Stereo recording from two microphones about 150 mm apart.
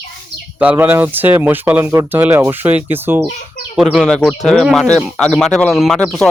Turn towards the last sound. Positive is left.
turn(degrees=5)  # may be behind; listen again after turning